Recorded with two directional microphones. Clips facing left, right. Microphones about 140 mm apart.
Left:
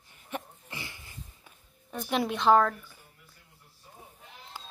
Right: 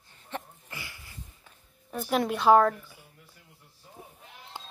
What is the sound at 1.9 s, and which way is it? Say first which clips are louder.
Speech: right 2 dB; centre (ahead or behind).